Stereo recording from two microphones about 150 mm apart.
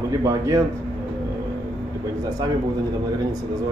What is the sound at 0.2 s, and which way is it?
Speech, 20° right (ahead or behind).